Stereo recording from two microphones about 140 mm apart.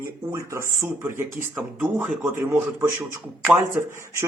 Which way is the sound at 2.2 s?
20° right (ahead or behind).